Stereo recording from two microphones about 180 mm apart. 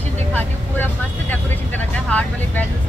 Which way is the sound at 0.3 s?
10° left (ahead or behind).